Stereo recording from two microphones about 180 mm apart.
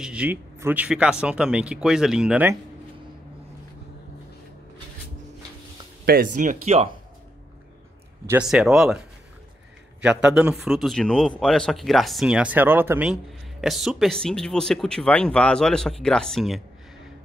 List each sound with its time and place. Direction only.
0.0 s a man's voice: 5° right (ahead or behind)
6.0 s speech: 50° right (ahead or behind); by 7.0 s 35° right (ahead or behind)
8.3 s a man's voice: 5° right (ahead or behind)
10.0 s a man's voice: 5° right (ahead or behind)